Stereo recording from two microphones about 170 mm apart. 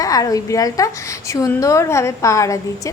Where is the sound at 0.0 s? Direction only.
20° left (ahead or behind).